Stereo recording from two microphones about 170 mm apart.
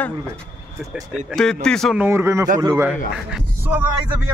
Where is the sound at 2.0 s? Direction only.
15° right (ahead or behind).